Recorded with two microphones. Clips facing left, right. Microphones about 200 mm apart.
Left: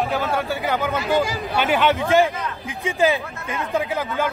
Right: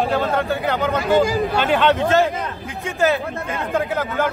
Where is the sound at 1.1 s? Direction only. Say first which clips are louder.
Right 4 dB; 50° right (ahead or behind).